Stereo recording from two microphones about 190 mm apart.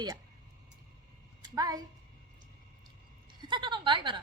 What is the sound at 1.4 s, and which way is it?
Speech, 20° right (ahead or behind).